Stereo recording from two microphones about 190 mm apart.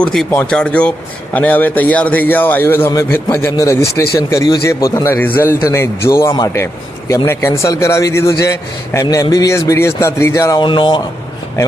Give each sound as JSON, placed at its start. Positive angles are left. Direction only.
{"t": 0.0, "sound": "speech", "side_deg": 5}